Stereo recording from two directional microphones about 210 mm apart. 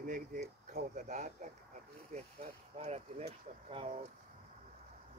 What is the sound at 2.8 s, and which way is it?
Speech, 30° right (ahead or behind).